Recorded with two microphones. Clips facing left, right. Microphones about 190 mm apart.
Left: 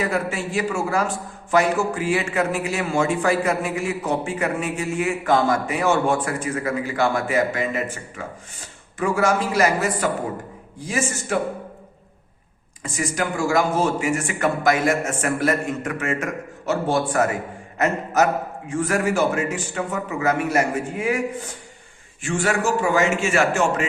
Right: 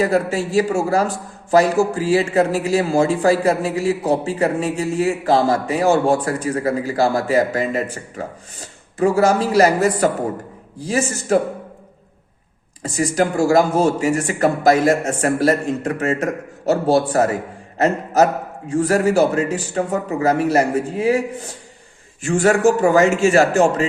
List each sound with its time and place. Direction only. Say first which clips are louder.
0.0 s a man's voice: right 6 dB; 35° right (ahead or behind)
12.8 s a man's voice: right 6 dB; 35° right (ahead or behind)
22.2 s a man's voice: right 7 dB; 40° right (ahead or behind)